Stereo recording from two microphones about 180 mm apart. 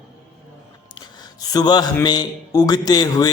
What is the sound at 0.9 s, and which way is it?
A man's voice, 20° left (ahead or behind).